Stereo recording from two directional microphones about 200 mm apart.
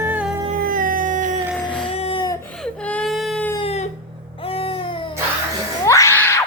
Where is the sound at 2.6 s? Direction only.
5° left (ahead or behind).